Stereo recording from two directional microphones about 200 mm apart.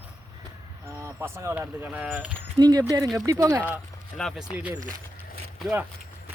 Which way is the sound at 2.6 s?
20° right (ahead or behind).